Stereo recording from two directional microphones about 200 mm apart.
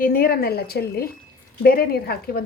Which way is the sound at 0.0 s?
50° left (ahead or behind).